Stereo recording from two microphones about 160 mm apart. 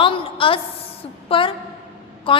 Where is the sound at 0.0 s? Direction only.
35° left (ahead or behind).